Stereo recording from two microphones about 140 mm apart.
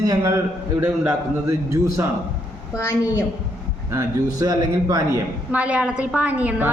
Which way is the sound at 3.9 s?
25° right (ahead or behind).